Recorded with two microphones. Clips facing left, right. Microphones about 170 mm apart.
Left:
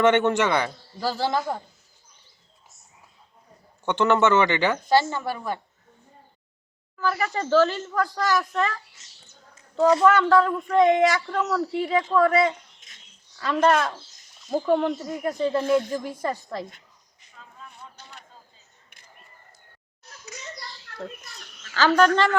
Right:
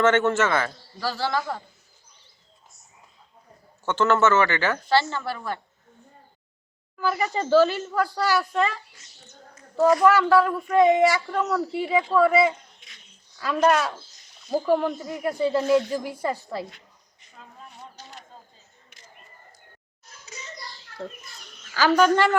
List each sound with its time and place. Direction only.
0.0 s speech: 15° left (ahead or behind)
3.8 s speech: 15° left (ahead or behind)
7.0 s speech: 15° right (ahead or behind)
10.0 s speech: 5° right (ahead or behind)
17.7 s a sound: 55° left (ahead or behind)
20.9 s children playing: 65° left (ahead or behind)
21.8 s speech: 10° right (ahead or behind)